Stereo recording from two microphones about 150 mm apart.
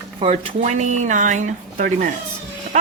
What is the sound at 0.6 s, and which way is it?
Speech, 55° right (ahead or behind).